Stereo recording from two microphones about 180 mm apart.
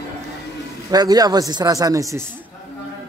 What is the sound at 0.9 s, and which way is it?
A man's voice, 20° right (ahead or behind).